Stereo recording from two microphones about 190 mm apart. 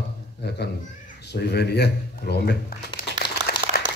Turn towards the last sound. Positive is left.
turn(degrees=55)  # may be behind; listen again after turning